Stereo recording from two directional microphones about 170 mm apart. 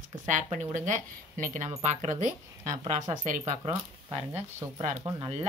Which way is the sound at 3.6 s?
30° right (ahead or behind).